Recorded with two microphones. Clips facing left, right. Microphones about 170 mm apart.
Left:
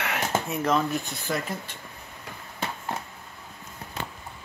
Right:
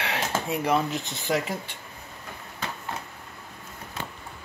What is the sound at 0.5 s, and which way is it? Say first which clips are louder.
Speech: right 1 dB; 15° right (ahead or behind).